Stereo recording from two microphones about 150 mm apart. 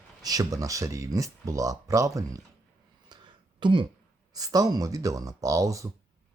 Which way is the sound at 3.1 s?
30° right (ahead or behind).